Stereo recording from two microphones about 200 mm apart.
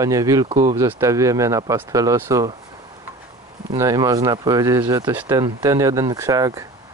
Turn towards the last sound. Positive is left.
turn(degrees=-15)  # may be behind; listen again after turning